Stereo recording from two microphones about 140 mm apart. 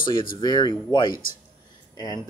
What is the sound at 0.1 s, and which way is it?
Speech, 90° left.